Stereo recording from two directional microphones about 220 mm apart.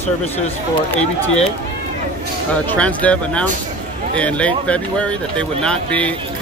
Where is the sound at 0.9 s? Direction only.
30° left (ahead or behind).